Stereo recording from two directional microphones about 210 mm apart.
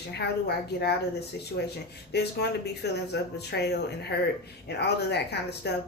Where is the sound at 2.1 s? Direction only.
55° left (ahead or behind).